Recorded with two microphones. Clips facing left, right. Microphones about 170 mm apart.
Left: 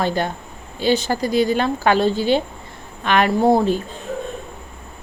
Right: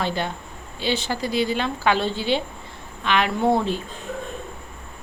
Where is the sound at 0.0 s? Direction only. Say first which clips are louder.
Left 5 dB; 45° left (ahead or behind).